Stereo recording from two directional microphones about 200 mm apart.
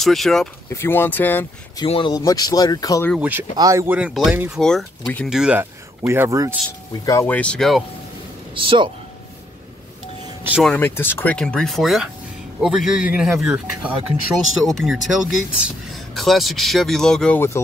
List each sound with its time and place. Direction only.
0.0 s speech: centre (ahead or behind)
1.9 s speech: 25° left (ahead or behind)
3.1 s speech: 10° right (ahead or behind)
7.1 s speech: 10° left (ahead or behind)
8.5 s speech: 25° right (ahead or behind)
10.5 s a man's voice: 5° left (ahead or behind)